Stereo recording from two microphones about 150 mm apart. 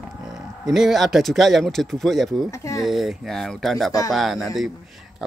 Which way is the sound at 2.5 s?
20° left (ahead or behind).